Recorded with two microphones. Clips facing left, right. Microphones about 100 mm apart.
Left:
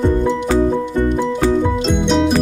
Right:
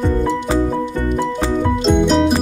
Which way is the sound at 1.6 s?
Centre (ahead or behind).